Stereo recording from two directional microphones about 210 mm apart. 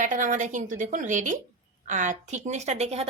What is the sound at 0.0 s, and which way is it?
A woman's voice, 40° right (ahead or behind).